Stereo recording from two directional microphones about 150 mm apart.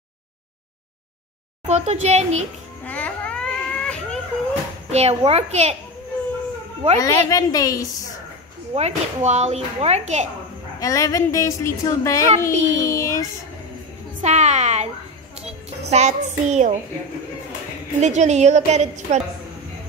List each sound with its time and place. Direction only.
1.7 s a child's voice: 45° right (ahead or behind)
2.8 s baby cry: 10° left (ahead or behind)
4.9 s a child's voice: 45° right (ahead or behind)
7.0 s a woman's voice: 25° left (ahead or behind)
8.7 s a child's voice: 45° right (ahead or behind)
10.8 s a woman's voice: 20° left (ahead or behind)
14.2 s a child's voice: 50° right (ahead or behind)
15.9 s a child's voice: 50° right (ahead or behind)
18.0 s a child's voice: 50° right (ahead or behind)